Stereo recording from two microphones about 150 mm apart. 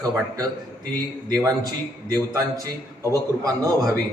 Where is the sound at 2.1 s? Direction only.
25° right (ahead or behind).